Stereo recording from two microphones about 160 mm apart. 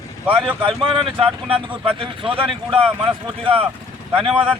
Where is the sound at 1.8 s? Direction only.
35° right (ahead or behind).